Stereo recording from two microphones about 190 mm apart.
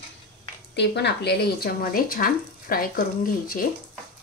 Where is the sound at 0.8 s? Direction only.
60° left (ahead or behind).